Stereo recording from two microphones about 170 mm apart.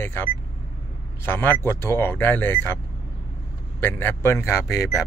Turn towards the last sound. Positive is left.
turn(degrees=-5)  # may be behind; listen again after turning